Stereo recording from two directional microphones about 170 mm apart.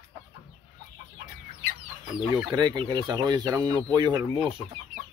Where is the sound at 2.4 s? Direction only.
25° right (ahead or behind).